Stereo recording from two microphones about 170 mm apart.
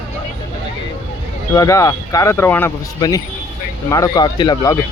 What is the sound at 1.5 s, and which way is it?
Speech, 20° left (ahead or behind).